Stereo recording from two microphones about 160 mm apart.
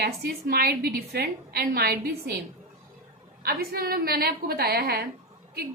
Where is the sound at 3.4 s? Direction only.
75° right (ahead or behind).